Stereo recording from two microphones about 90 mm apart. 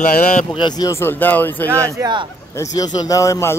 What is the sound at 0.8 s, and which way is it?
Speech, 25° left (ahead or behind).